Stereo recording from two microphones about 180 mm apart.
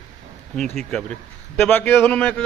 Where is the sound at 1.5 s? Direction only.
10° left (ahead or behind).